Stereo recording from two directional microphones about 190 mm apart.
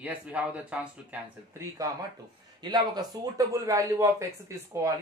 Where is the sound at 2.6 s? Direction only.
20° right (ahead or behind).